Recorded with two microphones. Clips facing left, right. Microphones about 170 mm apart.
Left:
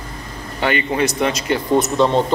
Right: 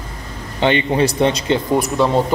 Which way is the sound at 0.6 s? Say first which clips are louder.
Right 3 dB; 30° right (ahead or behind).